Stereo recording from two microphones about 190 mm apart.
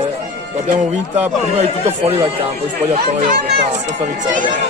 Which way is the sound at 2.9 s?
50° right (ahead or behind).